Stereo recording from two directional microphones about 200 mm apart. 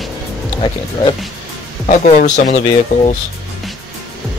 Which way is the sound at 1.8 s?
35° left (ahead or behind).